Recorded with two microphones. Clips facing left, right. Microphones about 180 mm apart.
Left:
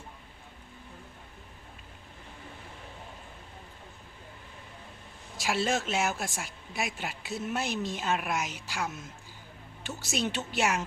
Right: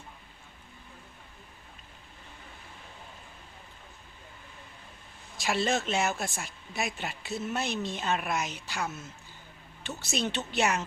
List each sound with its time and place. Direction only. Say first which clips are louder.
5.4 s speech: right 1 dB; 10° left (ahead or behind)